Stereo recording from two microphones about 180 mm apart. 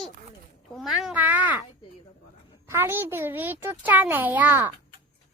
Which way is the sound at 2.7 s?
15° right (ahead or behind).